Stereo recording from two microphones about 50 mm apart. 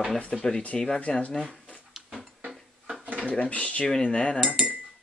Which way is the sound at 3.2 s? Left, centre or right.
Left.